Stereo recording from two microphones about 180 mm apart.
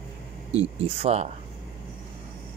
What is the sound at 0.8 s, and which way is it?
Speech, 35° right (ahead or behind).